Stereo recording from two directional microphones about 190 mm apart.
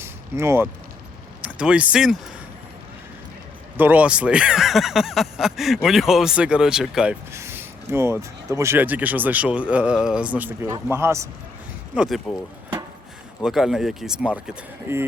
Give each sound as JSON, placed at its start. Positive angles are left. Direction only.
{"t": 0.0, "sound": "a sound", "side_deg": -15}
{"t": 1.4, "sound": "speech", "side_deg": -5}
{"t": 3.8, "sound": "speech", "side_deg": -10}
{"t": 11.9, "sound": "speech", "side_deg": 0}
{"t": 13.4, "sound": "speech", "side_deg": 0}